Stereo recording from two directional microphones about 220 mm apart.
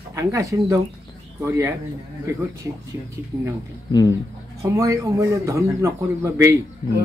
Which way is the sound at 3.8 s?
15° left (ahead or behind).